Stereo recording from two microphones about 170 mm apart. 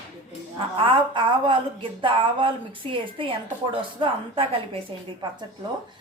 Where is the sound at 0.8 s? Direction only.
30° right (ahead or behind).